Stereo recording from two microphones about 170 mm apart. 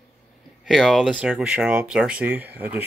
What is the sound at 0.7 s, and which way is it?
Speech, centre (ahead or behind).